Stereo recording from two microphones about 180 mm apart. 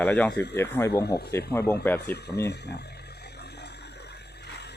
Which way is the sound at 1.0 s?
65° left (ahead or behind).